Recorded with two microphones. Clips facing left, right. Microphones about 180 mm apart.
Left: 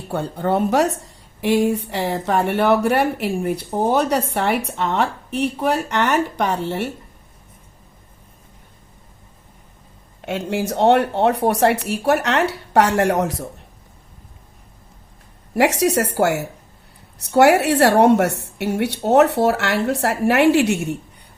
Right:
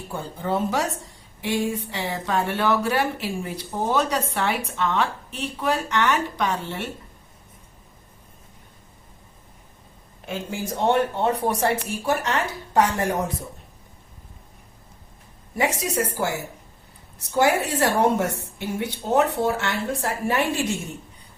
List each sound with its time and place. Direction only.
0.1 s a woman's voice: 70° left (ahead or behind)
10.2 s a woman's voice: 75° left (ahead or behind)
15.5 s a woman's voice: 75° left (ahead or behind)